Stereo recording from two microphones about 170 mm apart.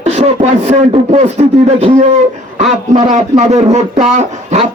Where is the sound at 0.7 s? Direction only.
40° right (ahead or behind).